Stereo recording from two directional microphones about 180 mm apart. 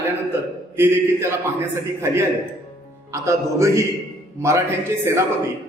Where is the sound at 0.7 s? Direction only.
15° right (ahead or behind).